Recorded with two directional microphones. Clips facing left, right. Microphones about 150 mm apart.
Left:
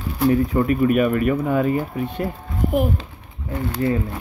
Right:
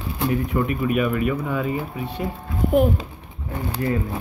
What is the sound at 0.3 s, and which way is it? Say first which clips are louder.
Speech: left 5 dB; 35° left (ahead or behind).